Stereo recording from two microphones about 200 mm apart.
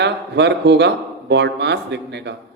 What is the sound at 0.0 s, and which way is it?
A man's voice, 60° right (ahead or behind).